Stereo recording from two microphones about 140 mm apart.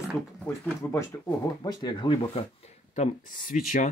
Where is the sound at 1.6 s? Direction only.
30° left (ahead or behind).